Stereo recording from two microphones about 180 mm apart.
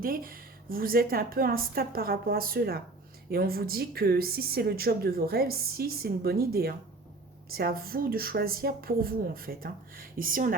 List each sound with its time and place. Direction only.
0.0 s a woman's voice: 50° right (ahead or behind)